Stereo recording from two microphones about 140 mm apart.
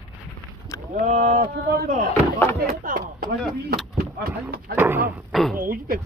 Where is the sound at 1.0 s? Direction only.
55° right (ahead or behind).